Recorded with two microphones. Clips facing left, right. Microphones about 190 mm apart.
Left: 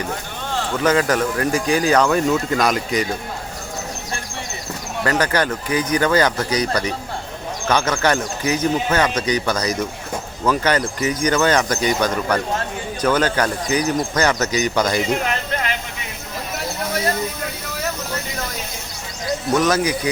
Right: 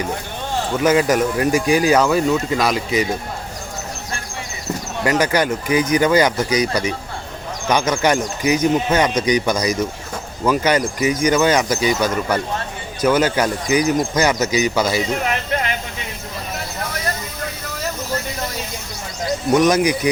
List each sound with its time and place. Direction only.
0.5 s speech: 10° right (ahead or behind)
5.0 s speech: 10° right (ahead or behind)
19.5 s speech: 15° right (ahead or behind)